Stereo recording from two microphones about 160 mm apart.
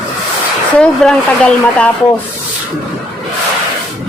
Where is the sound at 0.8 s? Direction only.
5° left (ahead or behind).